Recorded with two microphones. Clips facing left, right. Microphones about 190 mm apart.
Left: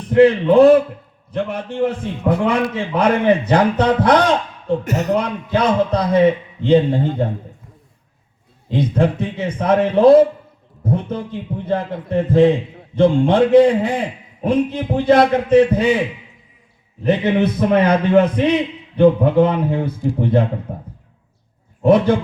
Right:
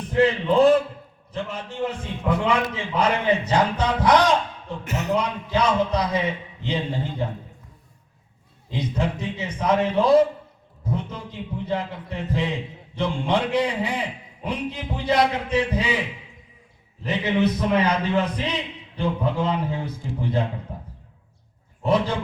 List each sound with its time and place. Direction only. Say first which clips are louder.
0.1 s a man's voice: left 8 dB; 60° left (ahead or behind)
4.9 s a man's voice: left 2 dB; 40° left (ahead or behind)
5.1 s a man's voice: left 2 dB; 55° left (ahead or behind)
8.7 s a man's voice: left 9 dB; 55° left (ahead or behind)
17.0 s a man's voice: left 6 dB; 55° left (ahead or behind)